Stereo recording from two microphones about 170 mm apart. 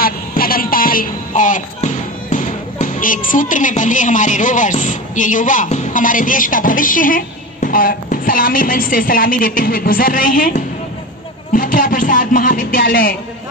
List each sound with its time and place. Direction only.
0.0 s speech: 60° left (ahead or behind)